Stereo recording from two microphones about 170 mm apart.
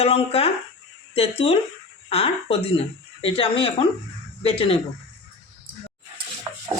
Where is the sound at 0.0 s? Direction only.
35° left (ahead or behind).